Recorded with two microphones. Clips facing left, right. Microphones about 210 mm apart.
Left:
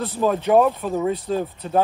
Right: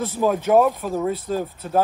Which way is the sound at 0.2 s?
10° right (ahead or behind).